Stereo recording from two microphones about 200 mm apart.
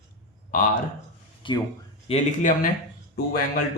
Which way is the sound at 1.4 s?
25° left (ahead or behind).